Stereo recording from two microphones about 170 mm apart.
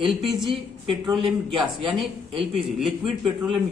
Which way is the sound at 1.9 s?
Centre (ahead or behind).